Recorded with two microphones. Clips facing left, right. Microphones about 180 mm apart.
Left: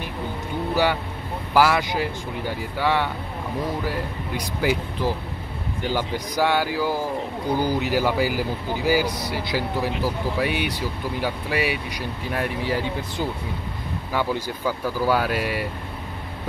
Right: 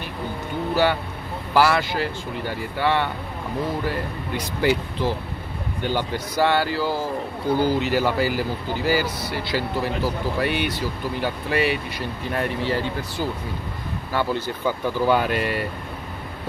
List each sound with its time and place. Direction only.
1.5 s speech: 10° left (ahead or behind)
5.8 s speech: 20° right (ahead or behind)
6.1 s speech: 10° left (ahead or behind)
14.1 s speech: 10° left (ahead or behind)